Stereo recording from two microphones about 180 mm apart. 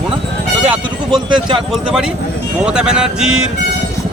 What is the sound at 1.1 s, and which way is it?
Speech, 25° right (ahead or behind).